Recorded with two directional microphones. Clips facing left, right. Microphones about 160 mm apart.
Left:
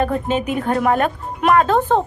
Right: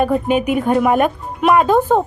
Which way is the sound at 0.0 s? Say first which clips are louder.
Right 4 dB; 10° right (ahead or behind).